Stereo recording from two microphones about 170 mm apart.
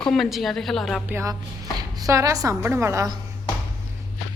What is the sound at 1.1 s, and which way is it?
A woman's voice, 15° right (ahead or behind).